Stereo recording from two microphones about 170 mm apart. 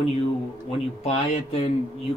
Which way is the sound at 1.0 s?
35° left (ahead or behind).